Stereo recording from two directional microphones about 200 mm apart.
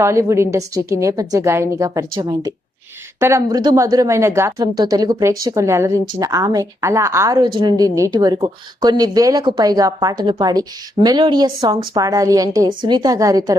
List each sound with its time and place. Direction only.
0.0 s a woman's voice: 15° right (ahead or behind)